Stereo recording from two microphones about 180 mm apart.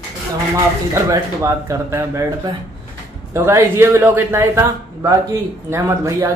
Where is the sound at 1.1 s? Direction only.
15° right (ahead or behind).